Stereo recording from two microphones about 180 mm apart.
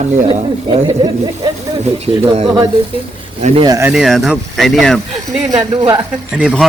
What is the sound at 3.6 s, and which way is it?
Speech, 15° right (ahead or behind).